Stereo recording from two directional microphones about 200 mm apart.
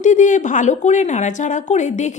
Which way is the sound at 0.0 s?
35° left (ahead or behind).